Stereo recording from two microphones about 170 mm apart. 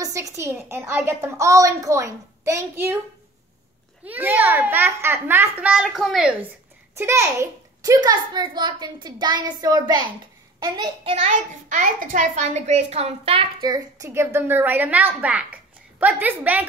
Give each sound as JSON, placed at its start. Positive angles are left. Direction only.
{"t": 0.0, "sound": "a child's voice", "side_deg": -20}
{"t": 4.1, "sound": "a child's voice", "side_deg": -10}
{"t": 7.0, "sound": "a child's voice", "side_deg": -15}
{"t": 11.1, "sound": "a child's voice", "side_deg": -45}